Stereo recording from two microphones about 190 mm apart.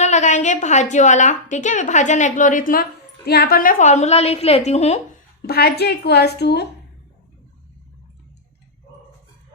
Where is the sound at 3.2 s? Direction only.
55° left (ahead or behind); by 4.9 s 35° left (ahead or behind).